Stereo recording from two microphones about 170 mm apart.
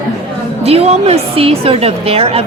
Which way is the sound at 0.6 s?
35° right (ahead or behind).